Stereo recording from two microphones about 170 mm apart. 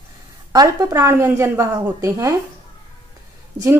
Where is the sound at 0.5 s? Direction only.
20° right (ahead or behind).